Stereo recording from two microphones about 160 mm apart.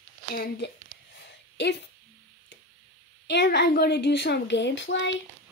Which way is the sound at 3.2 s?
90° left.